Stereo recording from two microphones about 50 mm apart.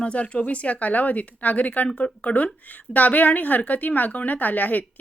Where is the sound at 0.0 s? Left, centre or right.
Left.